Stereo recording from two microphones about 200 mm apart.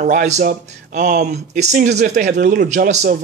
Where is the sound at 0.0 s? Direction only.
40° right (ahead or behind).